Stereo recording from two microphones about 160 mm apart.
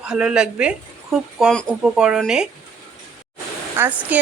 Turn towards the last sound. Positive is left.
turn(degrees=-10)  # may be behind; listen again after turning